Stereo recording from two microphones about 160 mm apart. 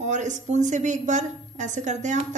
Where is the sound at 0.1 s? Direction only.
50° right (ahead or behind).